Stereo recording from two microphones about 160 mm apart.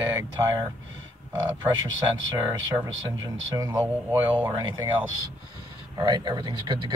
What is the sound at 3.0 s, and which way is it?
Speech, 20° right (ahead or behind).